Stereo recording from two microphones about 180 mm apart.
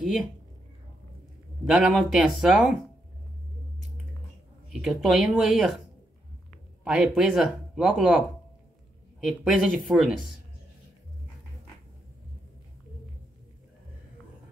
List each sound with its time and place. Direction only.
0.0 s speech: centre (ahead or behind)
1.7 s speech: centre (ahead or behind)
4.8 s speech: centre (ahead or behind)
6.8 s speech: 5° right (ahead or behind)
9.2 s speech: centre (ahead or behind)